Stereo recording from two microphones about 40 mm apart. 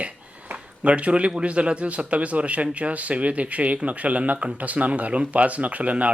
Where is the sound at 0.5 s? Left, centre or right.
Right.